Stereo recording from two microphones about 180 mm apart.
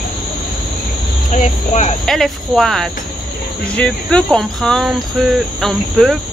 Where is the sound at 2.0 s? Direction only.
Centre (ahead or behind).